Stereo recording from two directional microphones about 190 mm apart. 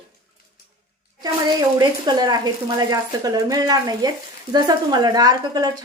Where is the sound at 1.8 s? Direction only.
20° right (ahead or behind).